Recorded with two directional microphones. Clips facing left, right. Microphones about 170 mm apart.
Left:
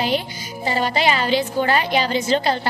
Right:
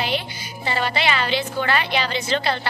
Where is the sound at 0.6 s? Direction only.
40° left (ahead or behind).